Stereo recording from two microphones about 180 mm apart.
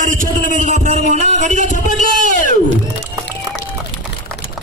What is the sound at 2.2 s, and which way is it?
Music, 45° left (ahead or behind).